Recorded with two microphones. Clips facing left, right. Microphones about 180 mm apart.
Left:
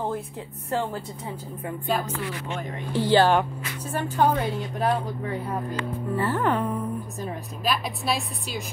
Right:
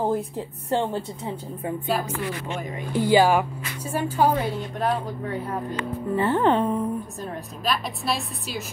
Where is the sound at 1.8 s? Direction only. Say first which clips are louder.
Even; 10° right (ahead or behind).